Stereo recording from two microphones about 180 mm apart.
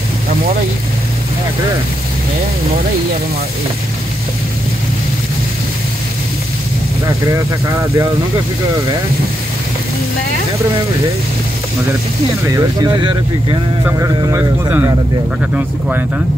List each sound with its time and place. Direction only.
12.4 s speech: 20° right (ahead or behind)